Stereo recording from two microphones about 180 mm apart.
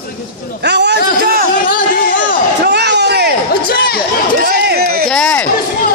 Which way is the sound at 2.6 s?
70° right (ahead or behind).